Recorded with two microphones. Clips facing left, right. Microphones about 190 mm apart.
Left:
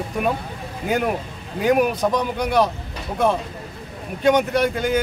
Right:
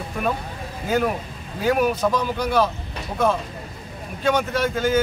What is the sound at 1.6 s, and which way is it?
Speech, 15° left (ahead or behind).